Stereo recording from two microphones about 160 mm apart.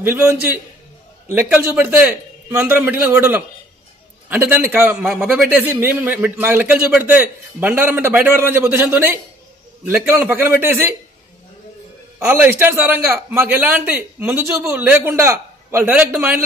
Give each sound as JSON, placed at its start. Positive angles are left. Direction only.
{"t": 0.0, "sound": "a man's voice", "side_deg": -15}
{"t": 12.3, "sound": "a man's voice", "side_deg": -15}